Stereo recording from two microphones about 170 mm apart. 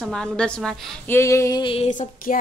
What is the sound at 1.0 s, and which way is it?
Speech, 15° left (ahead or behind).